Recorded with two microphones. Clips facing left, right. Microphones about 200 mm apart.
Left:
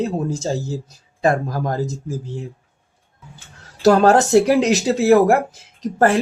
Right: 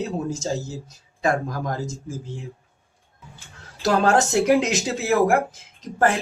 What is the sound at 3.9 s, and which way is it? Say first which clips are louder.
Speech: left 7 dB; 40° left (ahead or behind).